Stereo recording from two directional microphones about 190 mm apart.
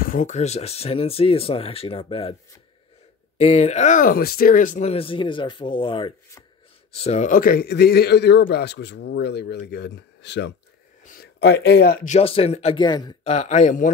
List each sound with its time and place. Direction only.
0.0 s speech: 45° left (ahead or behind); by 2.3 s 30° left (ahead or behind)
3.3 s speech: 35° left (ahead or behind)
7.0 s a man's voice: 35° left (ahead or behind); by 12.1 s 55° left (ahead or behind)
12.1 s speech: 30° left (ahead or behind)
13.3 s speech: 35° left (ahead or behind)